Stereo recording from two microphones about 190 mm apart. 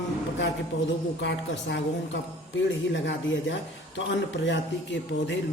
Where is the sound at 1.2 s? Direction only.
65° left (ahead or behind).